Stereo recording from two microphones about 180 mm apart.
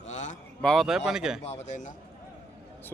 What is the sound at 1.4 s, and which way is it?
Speech, 40° left (ahead or behind).